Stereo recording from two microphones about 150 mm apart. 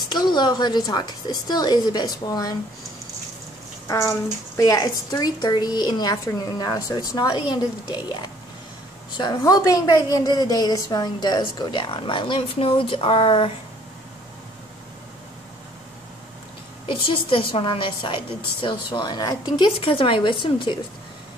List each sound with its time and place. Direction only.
0.1 s a woman's voice: 30° left (ahead or behind)
3.8 s a woman's voice: 20° left (ahead or behind); by 13.5 s 35° left (ahead or behind)
16.8 s a woman's voice: 35° left (ahead or behind)